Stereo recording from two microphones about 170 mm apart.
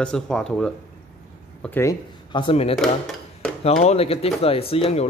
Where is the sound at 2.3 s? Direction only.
30° left (ahead or behind).